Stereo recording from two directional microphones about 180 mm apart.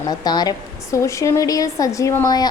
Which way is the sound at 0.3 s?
20° left (ahead or behind).